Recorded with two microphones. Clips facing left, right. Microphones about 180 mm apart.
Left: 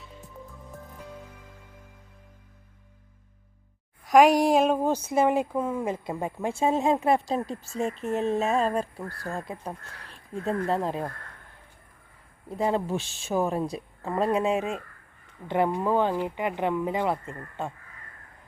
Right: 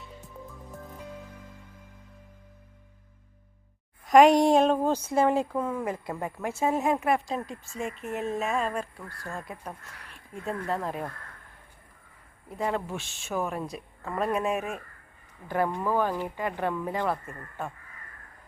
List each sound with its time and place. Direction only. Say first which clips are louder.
4.0 s speech: right 1 dB; centre (ahead or behind); by 11.1 s 30° left (ahead or behind)
12.5 s speech: left 4 dB; 30° left (ahead or behind)